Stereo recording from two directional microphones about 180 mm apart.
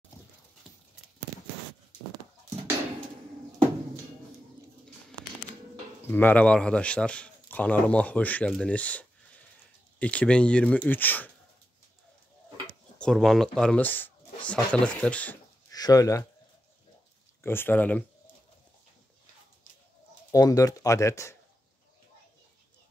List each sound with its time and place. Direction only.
0.7 s clip-clop: centre (ahead or behind)
6.0 s a man's voice: 10° left (ahead or behind)
13.0 s a man's voice: centre (ahead or behind)
15.7 s speech: 20° left (ahead or behind)
17.4 s a man's voice: 10° left (ahead or behind)
20.2 s speech: 20° left (ahead or behind)